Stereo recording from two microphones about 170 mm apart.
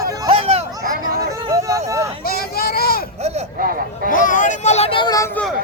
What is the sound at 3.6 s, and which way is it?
Speech, 60° right (ahead or behind).